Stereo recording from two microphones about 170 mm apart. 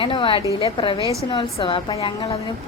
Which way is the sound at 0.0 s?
30° left (ahead or behind).